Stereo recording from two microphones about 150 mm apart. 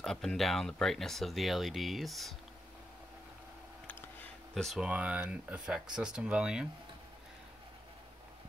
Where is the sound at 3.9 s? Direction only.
10° left (ahead or behind).